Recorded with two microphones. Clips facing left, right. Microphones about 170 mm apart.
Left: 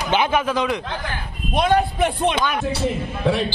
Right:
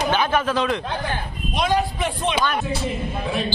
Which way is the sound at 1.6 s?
60° left (ahead or behind).